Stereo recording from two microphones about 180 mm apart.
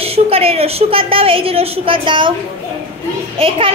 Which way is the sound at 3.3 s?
30° right (ahead or behind).